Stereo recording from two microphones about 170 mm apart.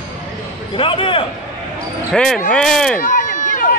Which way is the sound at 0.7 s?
30° left (ahead or behind).